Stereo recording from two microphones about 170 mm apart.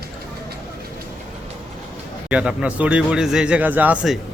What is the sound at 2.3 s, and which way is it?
A man's voice, 5° right (ahead or behind).